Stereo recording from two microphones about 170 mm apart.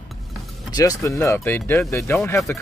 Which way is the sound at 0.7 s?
20° left (ahead or behind).